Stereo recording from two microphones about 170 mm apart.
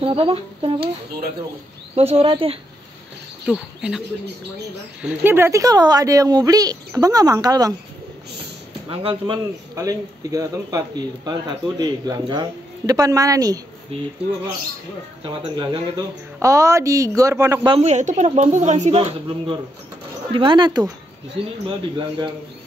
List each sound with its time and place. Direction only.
0.0 s speech: 35° right (ahead or behind)
2.0 s speech: 35° right (ahead or behind)
3.4 s speech: 5° right (ahead or behind)
5.0 s speech: 15° right (ahead or behind)
8.8 s speech: 30° right (ahead or behind)
15.2 s speech: 30° right (ahead or behind)
16.3 s speech: 20° right (ahead or behind)
17.7 s speech: 40° right (ahead or behind)